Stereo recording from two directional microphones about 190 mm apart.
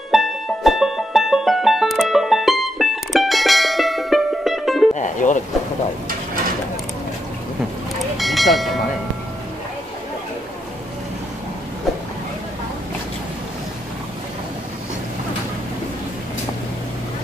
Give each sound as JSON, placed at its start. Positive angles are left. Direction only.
{"t": 0.1, "sound": "music", "side_deg": 0}
{"t": 4.9, "sound": "music", "side_deg": 40}
{"t": 8.2, "sound": "train", "side_deg": 0}